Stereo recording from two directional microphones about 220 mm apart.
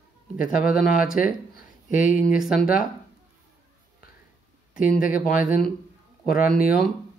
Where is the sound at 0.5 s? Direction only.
40° left (ahead or behind).